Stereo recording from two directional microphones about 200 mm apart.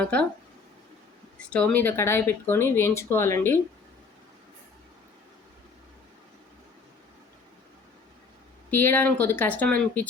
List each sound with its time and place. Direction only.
0.0 s speech: 5° left (ahead or behind)
1.4 s speech: 5° left (ahead or behind)
8.7 s speech: 10° left (ahead or behind)